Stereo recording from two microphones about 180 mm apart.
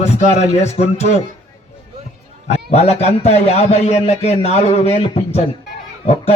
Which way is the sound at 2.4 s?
35° left (ahead or behind).